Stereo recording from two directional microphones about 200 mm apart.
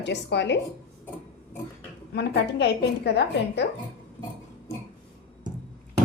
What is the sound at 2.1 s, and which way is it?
A woman's voice, 60° left (ahead or behind).